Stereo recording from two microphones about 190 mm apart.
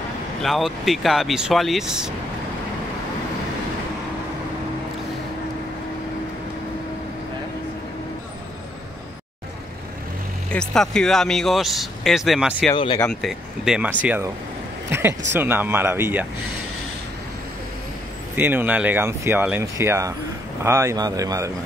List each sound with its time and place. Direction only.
0.4 s speech: centre (ahead or behind)
10.5 s speech: 5° left (ahead or behind)
12.7 s speech: 25° left (ahead or behind)
13.0 s speech: centre (ahead or behind)
14.9 s a sound: 15° right (ahead or behind)
15.3 s speech: 10° right (ahead or behind)
18.3 s speech: 10° right (ahead or behind)